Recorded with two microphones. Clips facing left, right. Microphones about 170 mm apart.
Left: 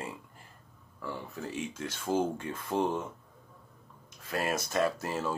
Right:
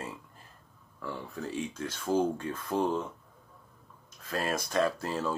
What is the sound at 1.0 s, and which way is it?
Speech, 15° left (ahead or behind).